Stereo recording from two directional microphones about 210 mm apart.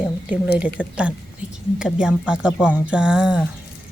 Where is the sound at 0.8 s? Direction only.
5° right (ahead or behind).